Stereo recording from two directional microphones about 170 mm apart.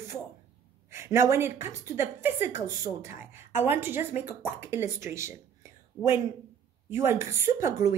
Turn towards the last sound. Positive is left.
turn(degrees=-15)  # may be behind; listen again after turning